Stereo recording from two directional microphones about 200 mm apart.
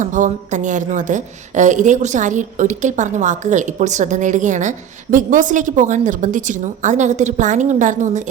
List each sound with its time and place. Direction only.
0.0 s a woman's voice: 40° right (ahead or behind)